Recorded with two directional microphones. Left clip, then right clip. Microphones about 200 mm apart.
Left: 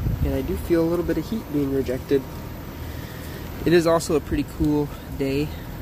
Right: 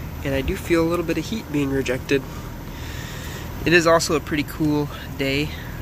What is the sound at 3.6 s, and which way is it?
Speech, 20° left (ahead or behind).